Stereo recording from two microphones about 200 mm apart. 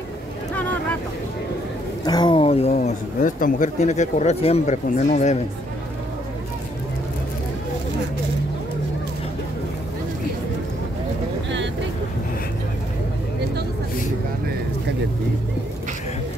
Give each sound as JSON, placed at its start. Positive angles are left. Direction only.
{"t": 2.0, "sound": "speech", "side_deg": 20}